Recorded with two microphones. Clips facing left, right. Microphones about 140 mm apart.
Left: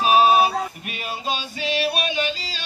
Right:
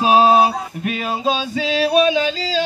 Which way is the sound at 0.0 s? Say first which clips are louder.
Right 3 dB; 90° right.